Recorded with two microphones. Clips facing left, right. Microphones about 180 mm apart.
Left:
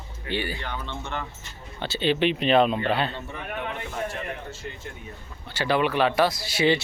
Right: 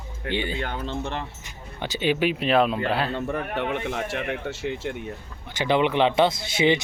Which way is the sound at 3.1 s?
60° right (ahead or behind).